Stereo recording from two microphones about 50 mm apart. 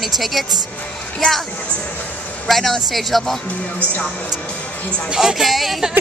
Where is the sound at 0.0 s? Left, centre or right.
Centre.